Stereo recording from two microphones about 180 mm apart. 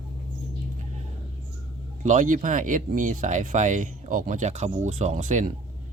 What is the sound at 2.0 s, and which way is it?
Speech, 45° right (ahead or behind).